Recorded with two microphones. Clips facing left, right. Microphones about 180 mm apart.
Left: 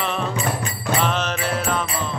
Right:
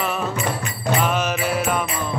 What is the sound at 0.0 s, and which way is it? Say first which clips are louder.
Music: even; 5° right (ahead or behind).